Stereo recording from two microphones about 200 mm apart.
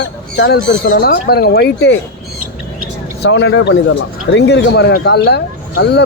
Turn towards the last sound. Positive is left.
turn(degrees=55)  # may be behind; listen again after turning